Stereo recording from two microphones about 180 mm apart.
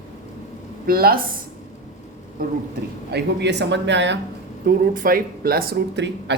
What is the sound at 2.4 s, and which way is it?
Speech, 50° right (ahead or behind).